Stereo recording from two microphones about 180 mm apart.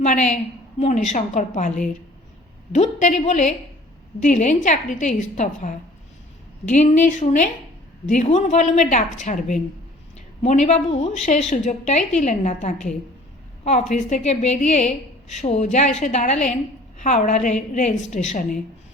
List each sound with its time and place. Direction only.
0.0 s a woman's voice: 40° left (ahead or behind)